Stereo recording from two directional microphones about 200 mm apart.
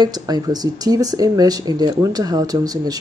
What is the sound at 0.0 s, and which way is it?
Speech, 20° right (ahead or behind).